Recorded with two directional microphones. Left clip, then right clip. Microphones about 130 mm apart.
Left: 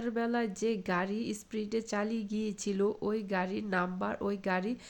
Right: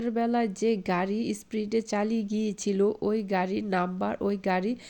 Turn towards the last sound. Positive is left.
turn(degrees=-25)  # may be behind; listen again after turning